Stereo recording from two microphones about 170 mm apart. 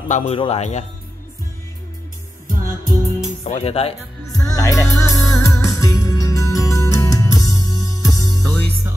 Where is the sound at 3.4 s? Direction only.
40° left (ahead or behind).